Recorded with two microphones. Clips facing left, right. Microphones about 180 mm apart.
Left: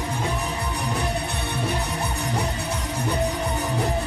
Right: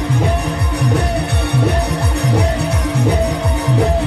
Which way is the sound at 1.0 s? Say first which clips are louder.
Right 8 dB; 70° right (ahead or behind).